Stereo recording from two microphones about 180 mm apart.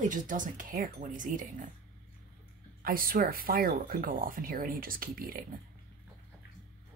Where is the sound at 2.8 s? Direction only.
55° right (ahead or behind).